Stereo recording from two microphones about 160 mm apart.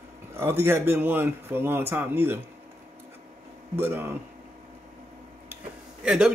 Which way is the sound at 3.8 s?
15° right (ahead or behind).